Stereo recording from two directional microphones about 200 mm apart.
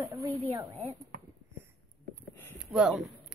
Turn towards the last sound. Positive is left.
turn(degrees=0)  # may be behind; listen again after turning